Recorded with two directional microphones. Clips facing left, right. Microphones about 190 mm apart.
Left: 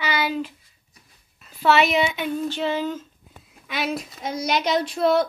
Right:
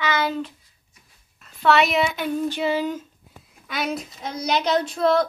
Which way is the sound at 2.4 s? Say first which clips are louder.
Right 2 dB; 10° right (ahead or behind).